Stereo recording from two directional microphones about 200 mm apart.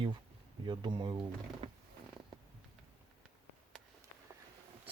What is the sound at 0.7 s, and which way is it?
Speech, 20° right (ahead or behind).